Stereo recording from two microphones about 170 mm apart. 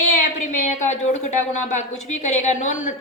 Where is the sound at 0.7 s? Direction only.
45° left (ahead or behind).